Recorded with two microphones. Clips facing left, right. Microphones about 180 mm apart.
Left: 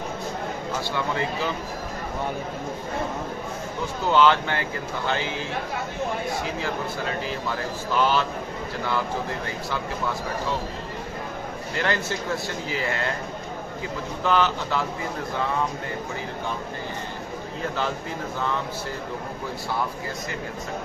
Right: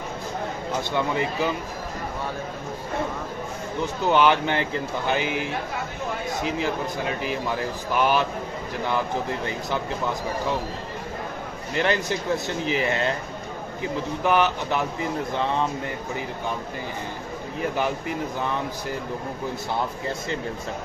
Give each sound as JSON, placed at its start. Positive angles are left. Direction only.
{"t": 0.7, "sound": "speech", "side_deg": -20}
{"t": 3.8, "sound": "a man's voice", "side_deg": -15}
{"t": 11.7, "sound": "speech", "side_deg": -20}
{"t": 14.2, "sound": "a man's voice", "side_deg": -15}